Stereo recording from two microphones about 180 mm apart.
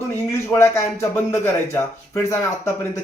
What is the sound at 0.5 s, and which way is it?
A man's voice, 15° left (ahead or behind).